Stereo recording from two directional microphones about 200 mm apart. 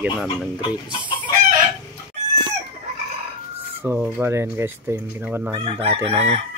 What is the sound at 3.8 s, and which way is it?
Speech, 10° right (ahead or behind).